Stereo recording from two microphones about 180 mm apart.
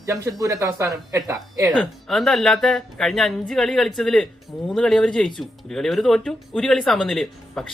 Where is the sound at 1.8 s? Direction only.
Centre (ahead or behind).